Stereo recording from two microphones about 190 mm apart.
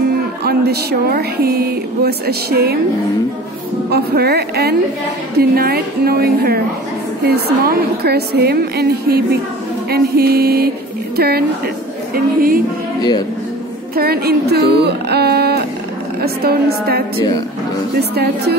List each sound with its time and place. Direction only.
0.4 s speech: 55° right (ahead or behind)
3.9 s a woman's voice: 55° right (ahead or behind)
13.9 s speech: 55° right (ahead or behind)